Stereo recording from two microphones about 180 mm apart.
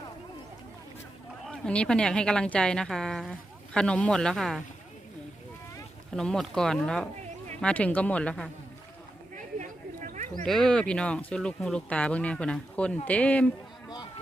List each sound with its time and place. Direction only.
1.5 s speech: 5° left (ahead or behind)
6.1 s speech: 5° left (ahead or behind)
9.6 s a sound: 45° right (ahead or behind)
10.4 s speech: centre (ahead or behind)